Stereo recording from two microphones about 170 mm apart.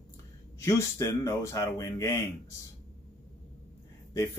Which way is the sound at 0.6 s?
15° left (ahead or behind).